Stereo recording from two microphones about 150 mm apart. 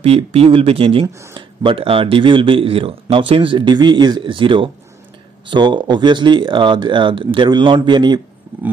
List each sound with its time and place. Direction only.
0.0 s speech: 40° right (ahead or behind)